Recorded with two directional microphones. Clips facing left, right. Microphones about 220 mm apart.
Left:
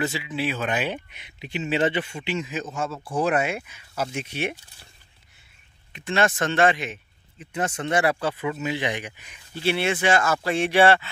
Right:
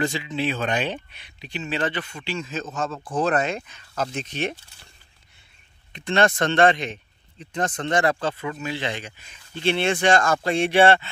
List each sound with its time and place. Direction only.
0.0 s speech: 5° left (ahead or behind)
1.1 s speech: 20° left (ahead or behind)
5.9 s speech: 5° left (ahead or behind)